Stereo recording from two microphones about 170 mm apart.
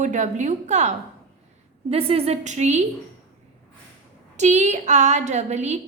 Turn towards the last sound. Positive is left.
turn(degrees=-40)  # may be behind; listen again after turning